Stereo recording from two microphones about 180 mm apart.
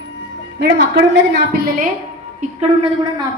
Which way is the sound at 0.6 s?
65° right (ahead or behind).